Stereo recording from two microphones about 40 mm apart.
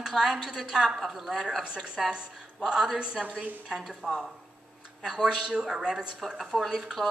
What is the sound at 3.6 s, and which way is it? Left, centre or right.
A woman's voice, centre.